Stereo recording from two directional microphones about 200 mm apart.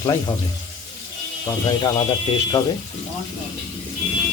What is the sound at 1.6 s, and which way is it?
Speech, 20° left (ahead or behind).